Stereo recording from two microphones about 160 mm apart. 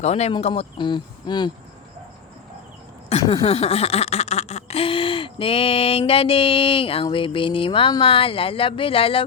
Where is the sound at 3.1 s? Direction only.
40° left (ahead or behind).